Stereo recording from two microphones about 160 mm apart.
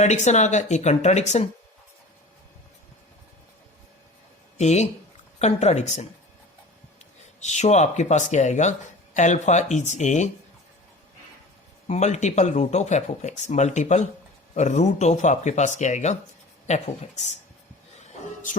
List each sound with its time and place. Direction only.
0.0 s speech: 45° left (ahead or behind)
4.5 s speech: 45° left (ahead or behind)
7.4 s speech: 45° left (ahead or behind)
11.9 s speech: 45° left (ahead or behind)